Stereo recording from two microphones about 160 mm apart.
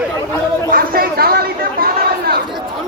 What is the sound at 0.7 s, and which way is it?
Chatter, 65° right (ahead or behind).